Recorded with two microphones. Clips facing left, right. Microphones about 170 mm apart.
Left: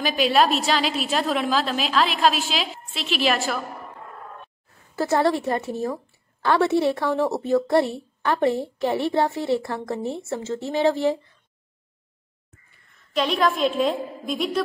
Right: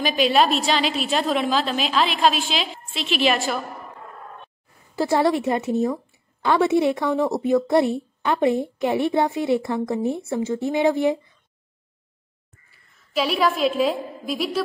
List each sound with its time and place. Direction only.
0.0 s a woman's voice: centre (ahead or behind)
4.9 s a woman's voice: 15° right (ahead or behind)
13.1 s a woman's voice: 5° right (ahead or behind)